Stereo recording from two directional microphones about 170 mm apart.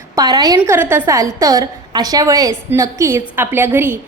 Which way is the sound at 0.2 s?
20° right (ahead or behind).